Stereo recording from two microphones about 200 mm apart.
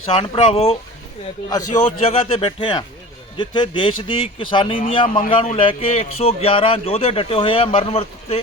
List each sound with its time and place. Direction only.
0.2 s a man's voice: 30° left (ahead or behind)